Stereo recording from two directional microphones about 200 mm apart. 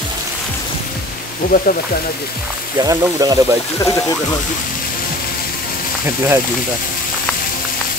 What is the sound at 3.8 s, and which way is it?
Speech, 15° left (ahead or behind).